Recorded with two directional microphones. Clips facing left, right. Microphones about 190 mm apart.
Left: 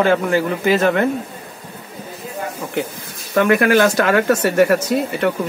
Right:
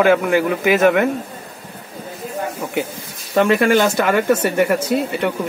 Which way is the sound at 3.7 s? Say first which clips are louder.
Left 1 dB; 15° right (ahead or behind).